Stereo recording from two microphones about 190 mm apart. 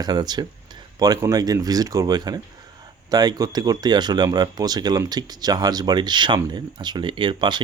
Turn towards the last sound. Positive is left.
turn(degrees=-25)  # may be behind; listen again after turning